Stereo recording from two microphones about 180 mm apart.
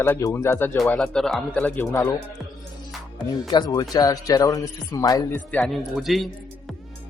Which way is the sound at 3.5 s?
25° left (ahead or behind).